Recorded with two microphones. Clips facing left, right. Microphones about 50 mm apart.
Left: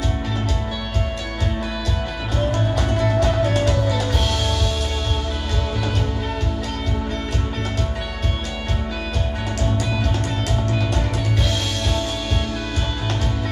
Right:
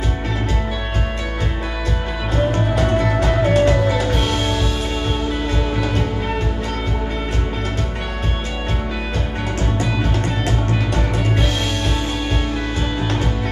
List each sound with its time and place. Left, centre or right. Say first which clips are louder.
3.0 s music: right 1 dB; right